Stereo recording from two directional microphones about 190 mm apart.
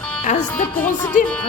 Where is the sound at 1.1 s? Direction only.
40° left (ahead or behind).